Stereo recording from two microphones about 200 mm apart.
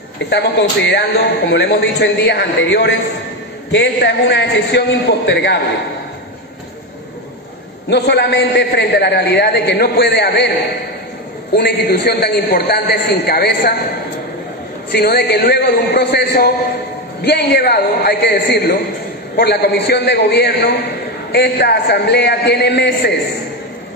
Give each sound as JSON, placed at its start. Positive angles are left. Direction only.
{"t": 0.3, "sound": "speech", "side_deg": 60}
{"t": 7.9, "sound": "speech", "side_deg": 55}
{"t": 11.5, "sound": "speech", "side_deg": 55}
{"t": 14.9, "sound": "a man's voice", "side_deg": 55}